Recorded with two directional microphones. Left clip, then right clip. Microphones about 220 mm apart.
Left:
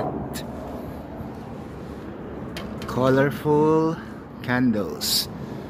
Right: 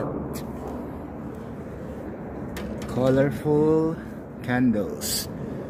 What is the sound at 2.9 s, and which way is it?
Speech, centre (ahead or behind).